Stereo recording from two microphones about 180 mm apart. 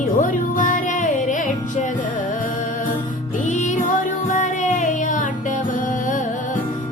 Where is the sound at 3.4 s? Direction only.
40° left (ahead or behind).